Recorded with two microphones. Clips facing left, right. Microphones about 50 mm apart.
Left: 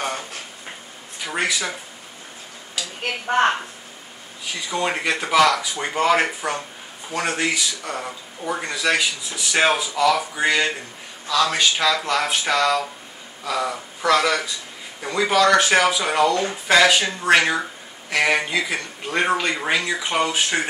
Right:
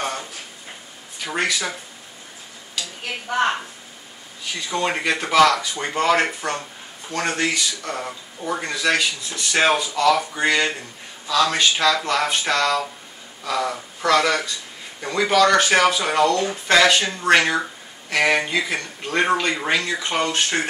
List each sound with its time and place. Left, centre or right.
0.0 s a sound: centre
1.2 s speech: centre
3.0 s a woman's voice: left
4.5 s speech: centre